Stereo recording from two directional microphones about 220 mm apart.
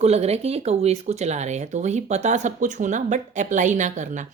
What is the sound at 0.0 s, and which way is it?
Speech, 30° right (ahead or behind).